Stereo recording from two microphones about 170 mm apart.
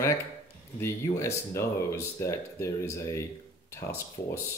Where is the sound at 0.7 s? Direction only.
15° left (ahead or behind).